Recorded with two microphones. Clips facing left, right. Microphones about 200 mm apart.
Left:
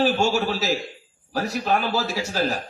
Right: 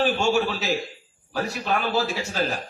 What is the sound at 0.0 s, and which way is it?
A man's voice, 40° left (ahead or behind).